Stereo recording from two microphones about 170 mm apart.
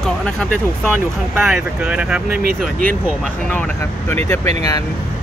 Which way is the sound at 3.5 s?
10° left (ahead or behind).